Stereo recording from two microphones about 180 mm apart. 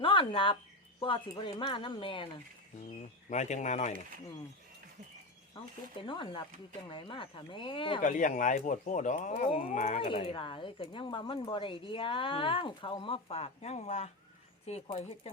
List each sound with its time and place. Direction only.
0.0 s a sound: 30° left (ahead or behind)
1.0 s speech: 30° left (ahead or behind)
3.2 s speech: 40° left (ahead or behind)
5.5 s speech: 25° left (ahead or behind)
8.0 s speech: 45° left (ahead or behind)